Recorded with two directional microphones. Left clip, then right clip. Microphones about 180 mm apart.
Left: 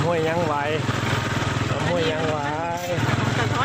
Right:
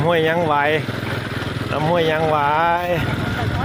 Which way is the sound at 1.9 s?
35° right (ahead or behind).